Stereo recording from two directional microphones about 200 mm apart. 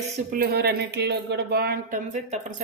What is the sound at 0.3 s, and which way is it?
Speech, 45° right (ahead or behind).